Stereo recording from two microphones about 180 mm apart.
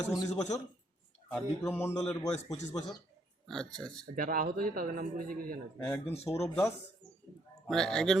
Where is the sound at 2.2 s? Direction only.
40° left (ahead or behind).